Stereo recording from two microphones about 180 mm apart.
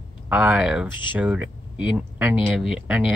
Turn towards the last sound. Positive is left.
turn(degrees=-10)  # may be behind; listen again after turning